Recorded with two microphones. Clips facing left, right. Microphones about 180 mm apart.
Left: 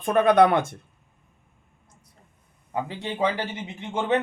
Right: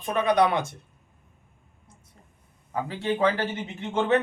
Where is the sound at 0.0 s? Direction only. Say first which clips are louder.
Left 4 dB; 50° left (ahead or behind).